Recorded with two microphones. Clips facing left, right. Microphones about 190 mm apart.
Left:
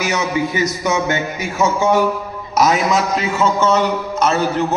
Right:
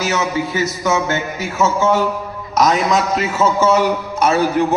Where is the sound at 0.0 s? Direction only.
15° left (ahead or behind).